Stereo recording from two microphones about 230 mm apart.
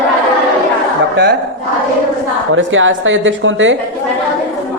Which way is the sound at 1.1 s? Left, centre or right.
Right.